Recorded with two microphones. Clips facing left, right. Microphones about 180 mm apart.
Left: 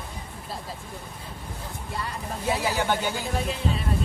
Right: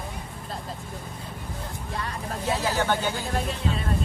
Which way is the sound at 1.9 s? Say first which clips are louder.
Even; centre (ahead or behind).